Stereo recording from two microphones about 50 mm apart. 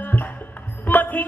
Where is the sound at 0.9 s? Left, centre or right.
Left.